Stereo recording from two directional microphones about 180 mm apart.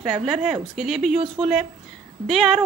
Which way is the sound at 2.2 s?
Centre (ahead or behind).